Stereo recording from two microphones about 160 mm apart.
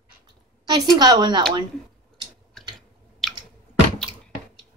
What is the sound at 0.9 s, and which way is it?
Speech, 25° right (ahead or behind).